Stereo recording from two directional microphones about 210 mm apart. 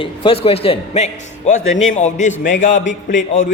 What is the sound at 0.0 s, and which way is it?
A man's voice, 25° left (ahead or behind).